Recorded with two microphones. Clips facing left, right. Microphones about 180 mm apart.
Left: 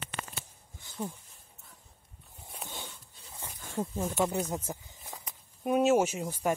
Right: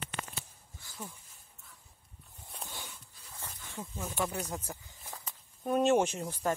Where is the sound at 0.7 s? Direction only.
25° left (ahead or behind).